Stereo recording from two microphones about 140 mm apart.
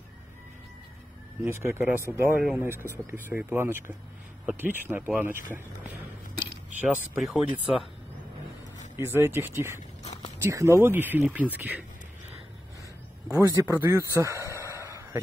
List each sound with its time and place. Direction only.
1.4 s speech: 15° right (ahead or behind)
6.8 s speech: 10° right (ahead or behind)
8.9 s speech: 15° right (ahead or behind)
13.3 s speech: 15° right (ahead or behind)
14.5 s a sound: 20° right (ahead or behind)